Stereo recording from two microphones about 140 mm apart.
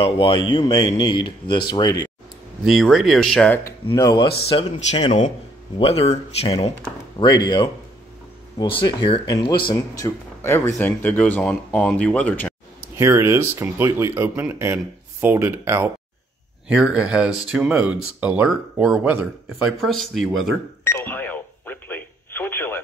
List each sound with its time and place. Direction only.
0.0 s speech: 35° left (ahead or behind)
2.6 s speech: centre (ahead or behind)
3.9 s speech: 25° left (ahead or behind)
4.5 s speech: 40° left (ahead or behind)
7.2 s speech: 30° left (ahead or behind); by 12.5 s 10° left (ahead or behind)
12.9 s speech: 20° right (ahead or behind)
19.8 s speech: centre (ahead or behind)
20.8 s radio: 15° left (ahead or behind)